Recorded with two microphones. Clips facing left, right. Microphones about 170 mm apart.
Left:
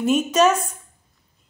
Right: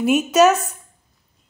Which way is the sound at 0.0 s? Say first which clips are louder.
Right 3 dB; 10° right (ahead or behind).